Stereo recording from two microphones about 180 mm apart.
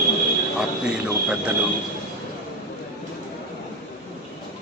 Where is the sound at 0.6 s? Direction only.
5° right (ahead or behind).